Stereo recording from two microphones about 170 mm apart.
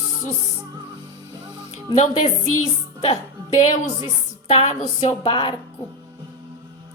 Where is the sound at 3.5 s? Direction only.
45° left (ahead or behind).